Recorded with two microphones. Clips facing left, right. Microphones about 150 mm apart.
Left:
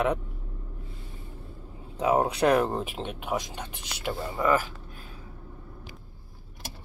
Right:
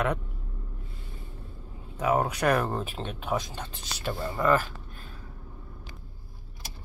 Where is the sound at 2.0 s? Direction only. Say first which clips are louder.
Left 2 dB; 25° left (ahead or behind).